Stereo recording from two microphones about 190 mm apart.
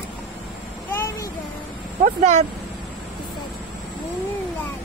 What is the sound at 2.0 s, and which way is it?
Speech, 40° right (ahead or behind).